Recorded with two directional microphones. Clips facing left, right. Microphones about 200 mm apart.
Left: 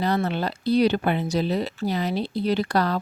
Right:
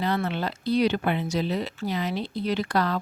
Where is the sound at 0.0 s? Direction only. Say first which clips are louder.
Left 3 dB; 40° left (ahead or behind).